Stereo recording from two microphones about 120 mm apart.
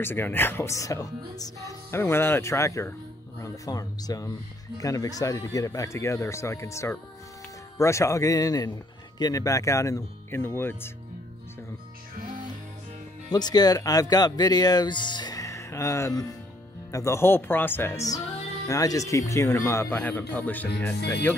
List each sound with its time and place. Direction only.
0.0 s speech: 20° left (ahead or behind)
13.3 s speech: 35° left (ahead or behind); by 21.4 s 15° left (ahead or behind)